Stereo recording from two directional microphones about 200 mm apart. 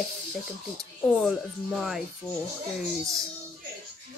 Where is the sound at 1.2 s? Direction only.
Centre (ahead or behind).